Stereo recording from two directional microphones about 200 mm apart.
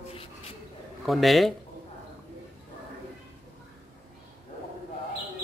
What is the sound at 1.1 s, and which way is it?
Speech, centre (ahead or behind).